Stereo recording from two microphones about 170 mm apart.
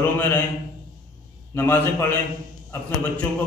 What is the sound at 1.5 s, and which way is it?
Mantra, 15° left (ahead or behind).